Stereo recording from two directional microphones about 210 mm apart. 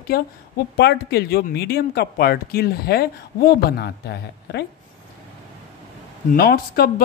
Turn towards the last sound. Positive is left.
turn(degrees=45)  # may be behind; listen again after turning